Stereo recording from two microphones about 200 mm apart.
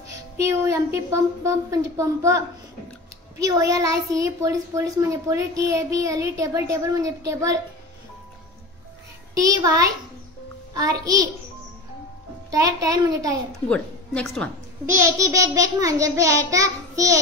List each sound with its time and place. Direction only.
0.4 s a child's voice: 15° right (ahead or behind)
9.3 s a child's voice: 15° right (ahead or behind)
12.4 s a child's voice: 15° right (ahead or behind)
13.7 s a woman's voice: 5° left (ahead or behind)
14.9 s a child's voice: 15° right (ahead or behind)